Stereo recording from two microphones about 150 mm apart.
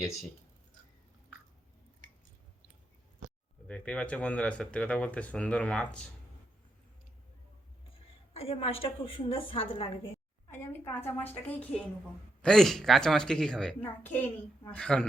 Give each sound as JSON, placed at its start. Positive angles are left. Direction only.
{"t": 3.7, "sound": "speech", "side_deg": 10}
{"t": 7.9, "sound": "a woman's voice", "side_deg": 40}
{"t": 10.5, "sound": "a woman's voice", "side_deg": 15}